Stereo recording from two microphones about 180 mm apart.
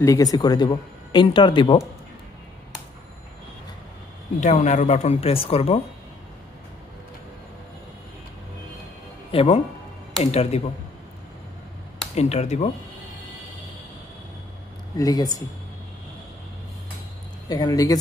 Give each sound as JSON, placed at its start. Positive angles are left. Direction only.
{"t": 0.0, "sound": "speech", "side_deg": 20}
{"t": 4.4, "sound": "speech", "side_deg": 40}
{"t": 9.3, "sound": "speech", "side_deg": 30}
{"t": 12.2, "sound": "speech", "side_deg": 40}
{"t": 15.0, "sound": "speech", "side_deg": 20}
{"t": 17.5, "sound": "speech", "side_deg": 20}